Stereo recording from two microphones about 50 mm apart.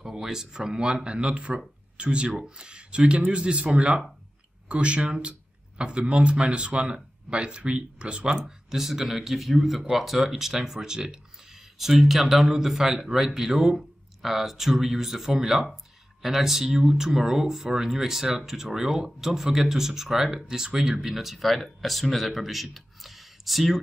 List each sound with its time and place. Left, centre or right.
0.0 s speech: centre